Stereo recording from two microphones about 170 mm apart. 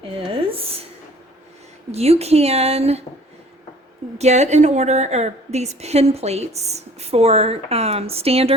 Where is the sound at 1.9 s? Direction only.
40° right (ahead or behind).